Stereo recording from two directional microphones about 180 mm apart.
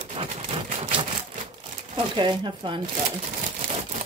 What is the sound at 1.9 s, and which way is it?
Speech, 25° right (ahead or behind).